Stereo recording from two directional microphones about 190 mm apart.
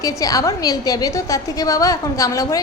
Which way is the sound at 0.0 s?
15° left (ahead or behind).